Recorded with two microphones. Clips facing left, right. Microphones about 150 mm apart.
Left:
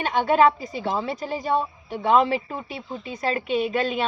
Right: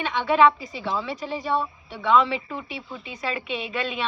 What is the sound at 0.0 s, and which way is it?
A woman's voice, 45° left (ahead or behind).